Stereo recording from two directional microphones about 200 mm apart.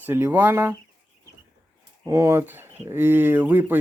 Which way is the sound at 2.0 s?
15° right (ahead or behind).